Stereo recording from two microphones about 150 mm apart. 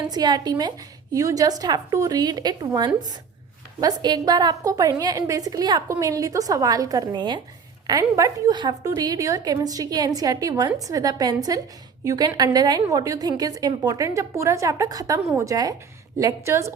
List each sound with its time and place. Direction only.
0.1 s a woman's voice: 25° right (ahead or behind)